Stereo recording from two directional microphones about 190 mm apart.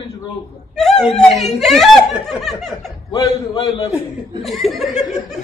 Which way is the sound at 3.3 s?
35° left (ahead or behind).